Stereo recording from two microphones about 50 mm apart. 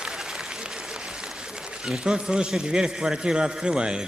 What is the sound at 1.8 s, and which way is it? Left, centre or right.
A man's voice, centre.